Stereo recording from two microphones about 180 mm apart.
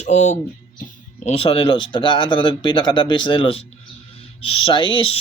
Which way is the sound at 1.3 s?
30° left (ahead or behind).